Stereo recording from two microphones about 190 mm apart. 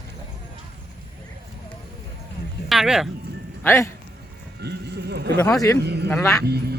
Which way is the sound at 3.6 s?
15° left (ahead or behind).